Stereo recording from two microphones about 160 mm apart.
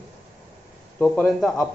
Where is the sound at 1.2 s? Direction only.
Centre (ahead or behind).